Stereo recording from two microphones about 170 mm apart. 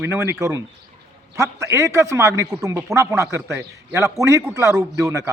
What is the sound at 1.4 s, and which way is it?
A man's voice, 15° right (ahead or behind).